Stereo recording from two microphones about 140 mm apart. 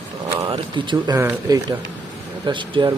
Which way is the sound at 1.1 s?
20° right (ahead or behind).